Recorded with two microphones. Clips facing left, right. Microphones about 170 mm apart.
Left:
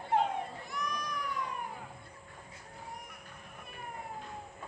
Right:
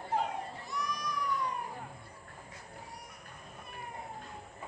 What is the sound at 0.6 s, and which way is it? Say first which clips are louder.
Baby cry: right 1 dB; 55° left (ahead or behind).